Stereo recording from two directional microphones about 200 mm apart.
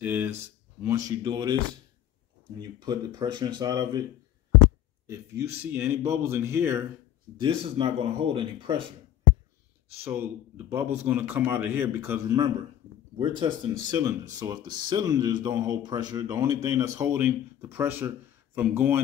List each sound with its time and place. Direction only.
0.0 s speech: 10° right (ahead or behind)
2.8 s speech: 20° right (ahead or behind)
5.0 s speech: 15° right (ahead or behind)
7.3 s speech: 25° right (ahead or behind)
10.0 s speech: 10° right (ahead or behind)